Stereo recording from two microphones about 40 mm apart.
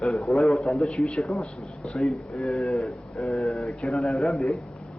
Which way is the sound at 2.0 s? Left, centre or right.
Left.